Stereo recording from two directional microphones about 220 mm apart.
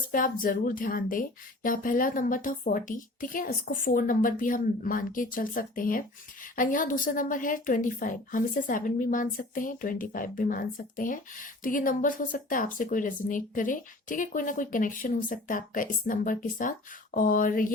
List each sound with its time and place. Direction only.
0.1 s a woman's voice: 40° left (ahead or behind)